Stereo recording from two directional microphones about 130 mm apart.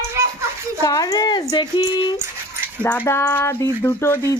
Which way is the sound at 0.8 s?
30° left (ahead or behind).